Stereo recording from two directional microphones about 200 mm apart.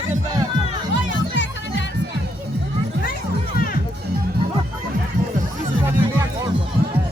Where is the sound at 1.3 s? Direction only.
65° left (ahead or behind).